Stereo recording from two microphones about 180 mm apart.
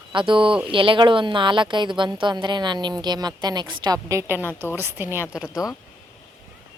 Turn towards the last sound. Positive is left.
turn(degrees=-5)  # may be behind; listen again after turning